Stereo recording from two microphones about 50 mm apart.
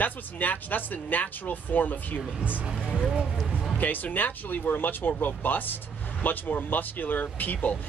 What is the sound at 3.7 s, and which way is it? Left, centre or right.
Speech, left.